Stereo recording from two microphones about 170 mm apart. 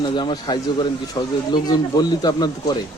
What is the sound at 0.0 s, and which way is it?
Speech, 30° left (ahead or behind).